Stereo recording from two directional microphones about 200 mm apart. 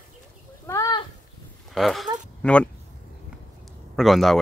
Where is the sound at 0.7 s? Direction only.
15° left (ahead or behind).